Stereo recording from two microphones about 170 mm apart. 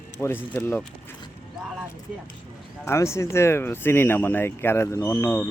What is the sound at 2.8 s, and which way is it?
Speech, 15° left (ahead or behind).